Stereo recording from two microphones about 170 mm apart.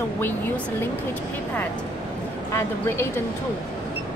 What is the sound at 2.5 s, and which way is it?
Speech, 15° left (ahead or behind).